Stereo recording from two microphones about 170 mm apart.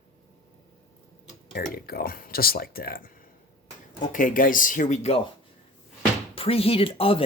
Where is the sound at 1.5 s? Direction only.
60° left (ahead or behind).